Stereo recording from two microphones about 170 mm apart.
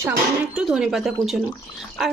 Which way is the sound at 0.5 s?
5° right (ahead or behind).